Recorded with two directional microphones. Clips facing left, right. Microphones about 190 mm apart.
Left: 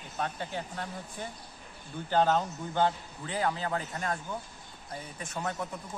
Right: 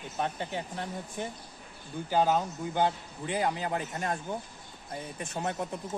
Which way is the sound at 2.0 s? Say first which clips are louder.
Even; 10° right (ahead or behind).